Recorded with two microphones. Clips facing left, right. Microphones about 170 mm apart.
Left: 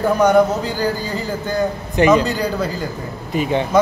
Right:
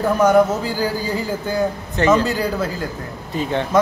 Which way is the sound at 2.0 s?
15° left (ahead or behind).